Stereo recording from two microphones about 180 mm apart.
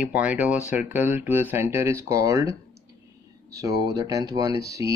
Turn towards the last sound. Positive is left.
turn(degrees=-20)  # may be behind; listen again after turning